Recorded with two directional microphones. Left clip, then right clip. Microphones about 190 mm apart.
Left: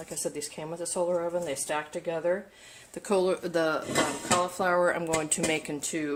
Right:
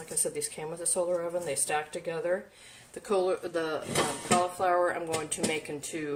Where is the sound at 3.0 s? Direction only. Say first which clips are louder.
Left 2 dB; 45° left (ahead or behind).